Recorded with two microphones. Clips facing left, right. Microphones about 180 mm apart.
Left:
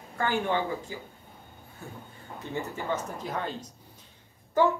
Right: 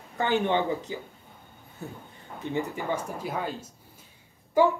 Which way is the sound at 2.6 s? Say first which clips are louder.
Right 2 dB; 10° right (ahead or behind).